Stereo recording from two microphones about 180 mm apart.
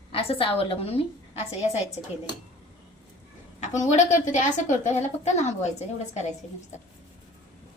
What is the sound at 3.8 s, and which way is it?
A woman's voice, 40° left (ahead or behind).